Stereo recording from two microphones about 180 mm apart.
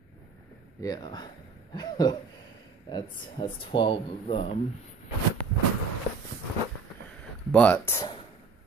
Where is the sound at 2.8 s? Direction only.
25° left (ahead or behind).